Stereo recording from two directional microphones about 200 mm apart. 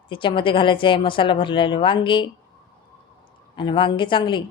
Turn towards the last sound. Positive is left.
turn(degrees=25)  # may be behind; listen again after turning